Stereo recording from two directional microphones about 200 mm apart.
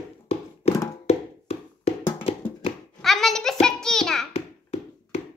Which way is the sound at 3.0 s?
Centre (ahead or behind).